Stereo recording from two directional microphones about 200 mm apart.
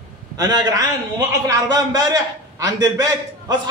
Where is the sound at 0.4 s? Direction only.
20° right (ahead or behind).